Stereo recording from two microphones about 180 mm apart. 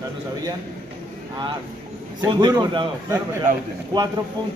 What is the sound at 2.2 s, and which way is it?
A man's voice, 25° right (ahead or behind).